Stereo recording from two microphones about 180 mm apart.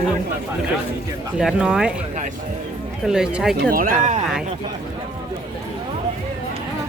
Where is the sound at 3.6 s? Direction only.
50° right (ahead or behind).